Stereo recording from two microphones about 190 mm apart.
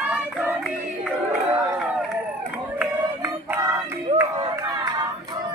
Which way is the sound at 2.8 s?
10° right (ahead or behind).